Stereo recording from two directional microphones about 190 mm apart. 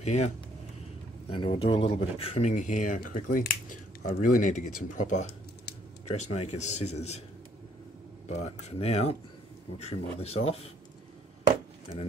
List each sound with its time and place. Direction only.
0.0 s speech: 35° left (ahead or behind)
1.3 s speech: 30° left (ahead or behind)
8.3 s speech: 35° left (ahead or behind)